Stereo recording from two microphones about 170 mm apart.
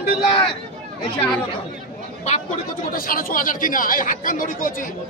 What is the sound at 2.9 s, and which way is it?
A man's voice, 55° left (ahead or behind).